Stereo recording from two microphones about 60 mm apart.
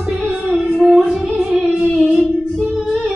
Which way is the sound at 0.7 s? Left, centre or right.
Centre.